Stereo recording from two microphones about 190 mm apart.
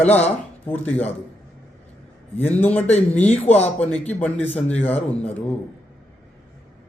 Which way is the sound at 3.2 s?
10° left (ahead or behind).